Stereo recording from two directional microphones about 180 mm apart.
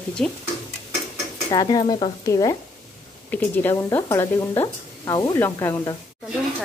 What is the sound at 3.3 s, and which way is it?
Speech, 10° left (ahead or behind).